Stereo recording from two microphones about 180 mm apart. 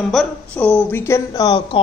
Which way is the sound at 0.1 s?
5° left (ahead or behind).